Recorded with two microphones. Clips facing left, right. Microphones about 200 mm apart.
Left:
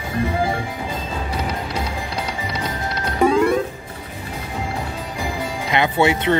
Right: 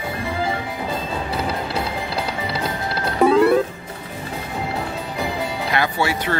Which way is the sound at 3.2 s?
5° right (ahead or behind).